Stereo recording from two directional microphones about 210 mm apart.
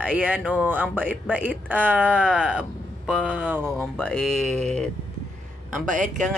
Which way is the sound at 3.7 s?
5° left (ahead or behind).